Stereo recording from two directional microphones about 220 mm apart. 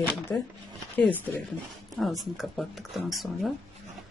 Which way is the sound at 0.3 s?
10° left (ahead or behind).